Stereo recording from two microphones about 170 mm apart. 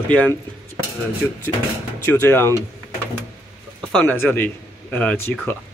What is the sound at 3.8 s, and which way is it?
A man's voice, 5° left (ahead or behind).